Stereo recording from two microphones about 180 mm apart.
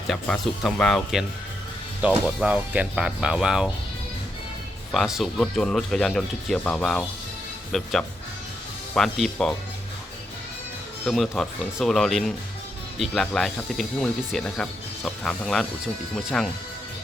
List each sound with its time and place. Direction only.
0.1 s speech: centre (ahead or behind)
2.2 s speech: 5° right (ahead or behind)
4.9 s speech: centre (ahead or behind)
9.0 s speech: centre (ahead or behind)
11.0 s speech: centre (ahead or behind)